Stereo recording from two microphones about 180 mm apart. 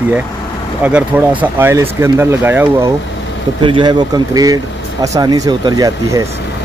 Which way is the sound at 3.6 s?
25° right (ahead or behind).